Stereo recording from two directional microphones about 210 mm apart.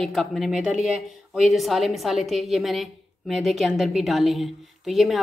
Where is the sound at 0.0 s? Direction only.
Centre (ahead or behind).